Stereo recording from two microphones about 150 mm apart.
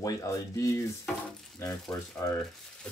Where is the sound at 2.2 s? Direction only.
20° left (ahead or behind).